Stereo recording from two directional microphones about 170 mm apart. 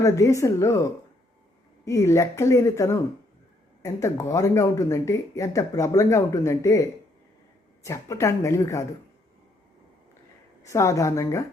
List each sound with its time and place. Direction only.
0.0 s speech: 20° left (ahead or behind)
7.9 s speech: 20° left (ahead or behind)
10.6 s speech: 15° left (ahead or behind)